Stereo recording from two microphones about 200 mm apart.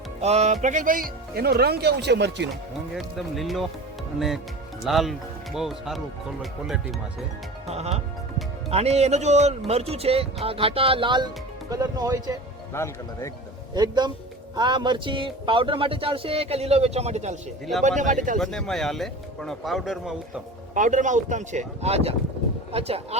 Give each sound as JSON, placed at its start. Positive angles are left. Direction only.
{"t": 0.2, "sound": "speech", "side_deg": -35}
{"t": 1.4, "sound": "speech", "side_deg": -55}
{"t": 2.9, "sound": "speech", "side_deg": 0}
{"t": 4.8, "sound": "speech", "side_deg": 0}
{"t": 7.7, "sound": "speech", "side_deg": -30}
{"t": 12.7, "sound": "speech", "side_deg": 15}
{"t": 13.7, "sound": "speech", "side_deg": -20}
{"t": 18.3, "sound": "speech", "side_deg": 0}
{"t": 20.7, "sound": "speech", "side_deg": -40}